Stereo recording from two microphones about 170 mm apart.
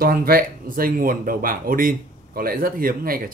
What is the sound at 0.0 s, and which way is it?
Speech, 60° right (ahead or behind).